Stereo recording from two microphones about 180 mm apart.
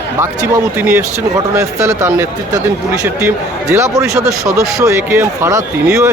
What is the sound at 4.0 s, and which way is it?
Speech, 5° right (ahead or behind).